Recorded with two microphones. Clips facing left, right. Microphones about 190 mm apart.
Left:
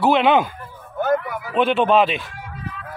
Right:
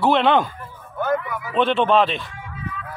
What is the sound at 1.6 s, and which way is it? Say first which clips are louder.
Speech: left 1 dB; 5° left (ahead or behind).